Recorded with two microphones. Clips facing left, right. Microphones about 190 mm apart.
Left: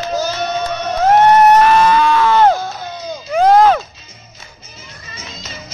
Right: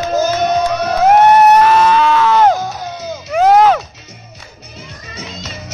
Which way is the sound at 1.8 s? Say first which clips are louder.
Right 1 dB; 10° left (ahead or behind).